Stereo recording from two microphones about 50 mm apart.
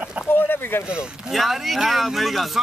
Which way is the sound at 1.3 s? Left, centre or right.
Centre.